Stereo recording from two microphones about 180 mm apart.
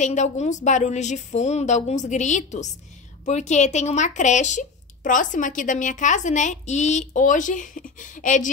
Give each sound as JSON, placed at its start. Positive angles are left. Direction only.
{"t": 0.0, "sound": "speech", "side_deg": 40}